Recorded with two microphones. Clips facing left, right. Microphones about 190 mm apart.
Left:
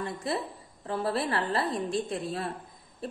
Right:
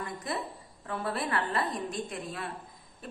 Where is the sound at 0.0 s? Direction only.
30° left (ahead or behind).